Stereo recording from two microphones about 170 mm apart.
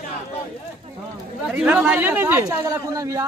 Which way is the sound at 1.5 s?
10° right (ahead or behind).